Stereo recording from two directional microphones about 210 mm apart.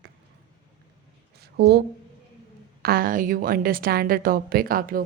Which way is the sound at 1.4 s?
50° right (ahead or behind).